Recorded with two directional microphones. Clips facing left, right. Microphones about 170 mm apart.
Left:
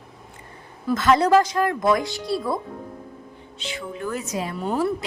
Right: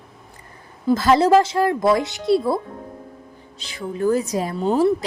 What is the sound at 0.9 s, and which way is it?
Speech, 30° right (ahead or behind).